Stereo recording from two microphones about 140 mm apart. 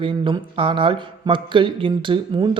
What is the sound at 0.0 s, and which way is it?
Speech, 40° right (ahead or behind).